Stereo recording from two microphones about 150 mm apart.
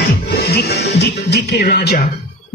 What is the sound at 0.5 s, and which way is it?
Music, 90° left.